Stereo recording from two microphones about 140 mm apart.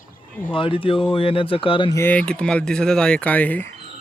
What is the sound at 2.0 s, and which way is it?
Speech, 10° left (ahead or behind).